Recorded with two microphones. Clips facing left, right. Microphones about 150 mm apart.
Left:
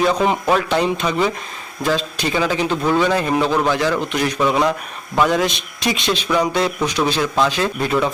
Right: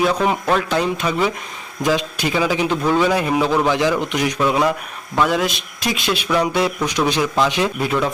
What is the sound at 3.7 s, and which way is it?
Speech, 15° right (ahead or behind).